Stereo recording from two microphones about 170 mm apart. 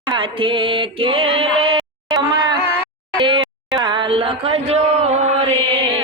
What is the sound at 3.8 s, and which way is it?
Chant, 30° right (ahead or behind).